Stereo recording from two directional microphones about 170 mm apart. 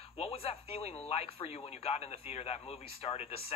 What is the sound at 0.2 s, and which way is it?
Speech, 35° left (ahead or behind).